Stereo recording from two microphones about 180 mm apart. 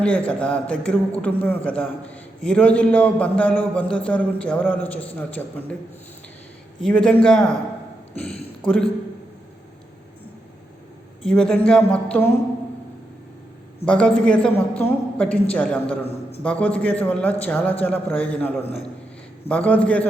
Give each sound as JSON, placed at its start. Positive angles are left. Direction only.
{"t": 0.3, "sound": "a man's voice", "side_deg": 5}
{"t": 6.8, "sound": "a woman's voice", "side_deg": 5}
{"t": 11.3, "sound": "a woman's voice", "side_deg": 5}
{"t": 13.8, "sound": "a woman's voice", "side_deg": 5}
{"t": 18.6, "sound": "a man's voice", "side_deg": 35}
{"t": 19.5, "sound": "a man's voice", "side_deg": 10}